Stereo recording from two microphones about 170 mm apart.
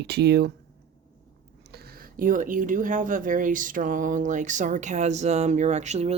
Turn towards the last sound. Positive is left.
turn(degrees=-40)  # may be behind; listen again after turning